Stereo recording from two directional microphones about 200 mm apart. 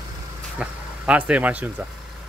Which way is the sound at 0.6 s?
5° right (ahead or behind).